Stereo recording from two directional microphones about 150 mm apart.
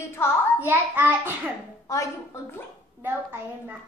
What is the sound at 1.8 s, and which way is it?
Speech, 20° left (ahead or behind).